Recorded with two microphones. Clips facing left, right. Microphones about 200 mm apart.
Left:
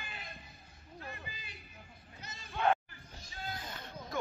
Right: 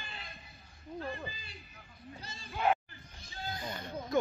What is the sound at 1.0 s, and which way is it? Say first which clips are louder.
Speech: right 3 dB; 30° right (ahead or behind).